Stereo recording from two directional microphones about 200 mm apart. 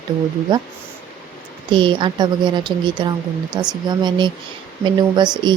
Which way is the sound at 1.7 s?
25° right (ahead or behind).